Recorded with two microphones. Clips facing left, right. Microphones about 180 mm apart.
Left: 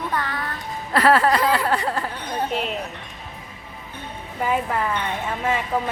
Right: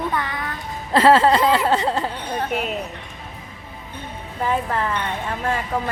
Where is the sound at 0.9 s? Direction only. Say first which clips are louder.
Right 3 dB; 25° right (ahead or behind).